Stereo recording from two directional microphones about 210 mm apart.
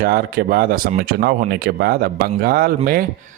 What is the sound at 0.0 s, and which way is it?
Speech, 45° right (ahead or behind).